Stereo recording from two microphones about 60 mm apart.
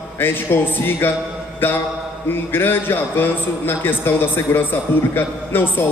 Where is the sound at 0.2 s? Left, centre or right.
Left.